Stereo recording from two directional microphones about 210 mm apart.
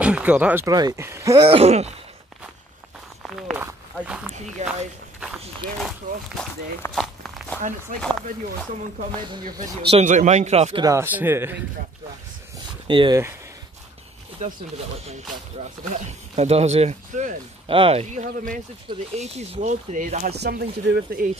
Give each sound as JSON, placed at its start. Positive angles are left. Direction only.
{"t": 0.0, "sound": "speech", "side_deg": -5}
{"t": 1.5, "sound": "speech", "side_deg": -30}
{"t": 3.2, "sound": "speech", "side_deg": 0}
{"t": 4.6, "sound": "speech", "side_deg": -35}
{"t": 5.8, "sound": "speech", "side_deg": 0}
{"t": 9.6, "sound": "speech", "side_deg": -35}
{"t": 12.8, "sound": "speech", "side_deg": -20}
{"t": 14.4, "sound": "speech", "side_deg": -35}
{"t": 15.9, "sound": "speech", "side_deg": -30}
{"t": 20.2, "sound": "speech", "side_deg": -50}